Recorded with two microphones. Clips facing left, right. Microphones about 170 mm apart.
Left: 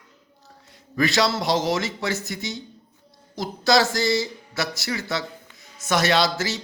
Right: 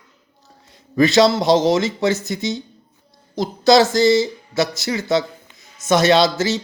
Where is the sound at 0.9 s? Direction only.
25° right (ahead or behind).